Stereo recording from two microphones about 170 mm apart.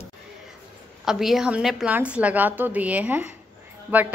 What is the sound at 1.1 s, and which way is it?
Speech, centre (ahead or behind).